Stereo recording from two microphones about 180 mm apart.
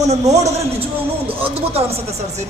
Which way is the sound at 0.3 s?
35° right (ahead or behind).